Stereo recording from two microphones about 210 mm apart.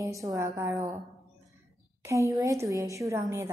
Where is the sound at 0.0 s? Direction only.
15° right (ahead or behind).